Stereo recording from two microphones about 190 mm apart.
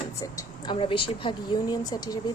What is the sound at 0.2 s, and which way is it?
Speech, 20° left (ahead or behind).